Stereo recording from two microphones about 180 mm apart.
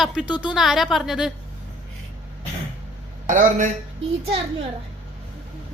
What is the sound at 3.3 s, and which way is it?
Speech, 45° right (ahead or behind).